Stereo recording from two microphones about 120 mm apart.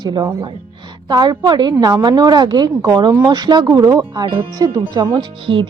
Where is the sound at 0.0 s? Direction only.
40° right (ahead or behind).